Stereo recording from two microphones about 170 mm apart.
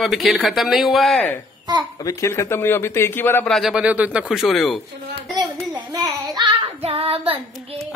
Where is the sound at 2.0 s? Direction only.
20° left (ahead or behind).